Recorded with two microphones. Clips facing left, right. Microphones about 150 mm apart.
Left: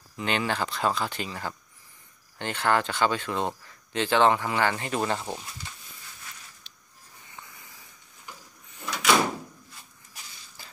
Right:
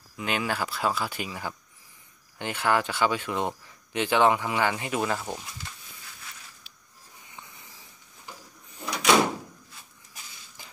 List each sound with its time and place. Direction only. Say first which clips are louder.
0.2 s speech: left 1 dB; 5° right (ahead or behind)
5.2 s speech: even; 5° left (ahead or behind)
7.3 s hiss: even; 20° right (ahead or behind)
8.8 s door: right 1 dB; 15° right (ahead or behind)
10.6 s a sound: even; 20° right (ahead or behind)